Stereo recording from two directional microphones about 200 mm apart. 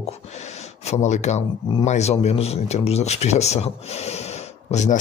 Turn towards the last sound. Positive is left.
turn(degrees=35)  # may be behind; listen again after turning